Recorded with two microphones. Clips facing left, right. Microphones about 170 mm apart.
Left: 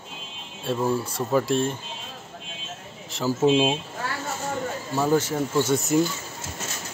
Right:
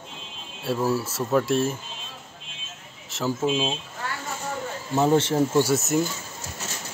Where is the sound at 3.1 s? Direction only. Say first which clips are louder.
Left 1 dB; centre (ahead or behind).